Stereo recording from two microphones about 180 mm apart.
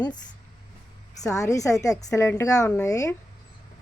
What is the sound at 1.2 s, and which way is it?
Speech, 15° left (ahead or behind).